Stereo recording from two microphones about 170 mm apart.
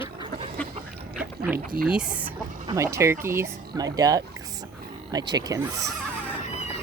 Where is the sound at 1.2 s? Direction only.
10° right (ahead or behind).